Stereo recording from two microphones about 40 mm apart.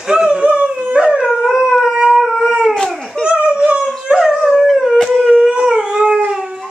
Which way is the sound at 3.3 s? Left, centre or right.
Right.